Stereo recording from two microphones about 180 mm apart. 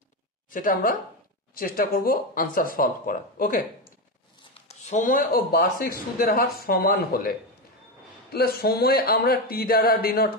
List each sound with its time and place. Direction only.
0.5 s speech: 50° left (ahead or behind)
4.6 s speech: 40° left (ahead or behind)